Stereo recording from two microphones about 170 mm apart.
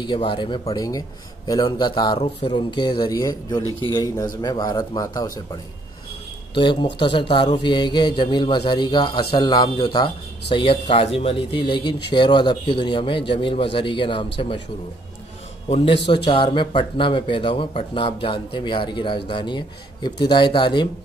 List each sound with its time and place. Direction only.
0.0 s speech: 30° left (ahead or behind)
15.7 s speech: 35° left (ahead or behind)